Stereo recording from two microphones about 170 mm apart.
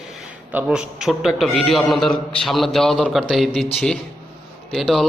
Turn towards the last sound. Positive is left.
turn(degrees=5)  # may be behind; listen again after turning